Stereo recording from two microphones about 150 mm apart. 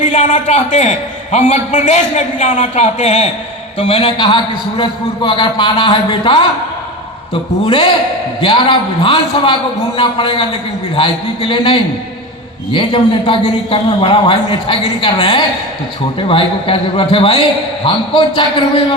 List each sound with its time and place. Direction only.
0.0 s a man's voice: 55° left (ahead or behind); by 6.5 s 35° left (ahead or behind)
7.6 s a man's voice: 35° left (ahead or behind)